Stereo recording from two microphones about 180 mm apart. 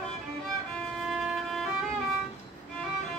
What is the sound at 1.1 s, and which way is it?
Music, centre (ahead or behind).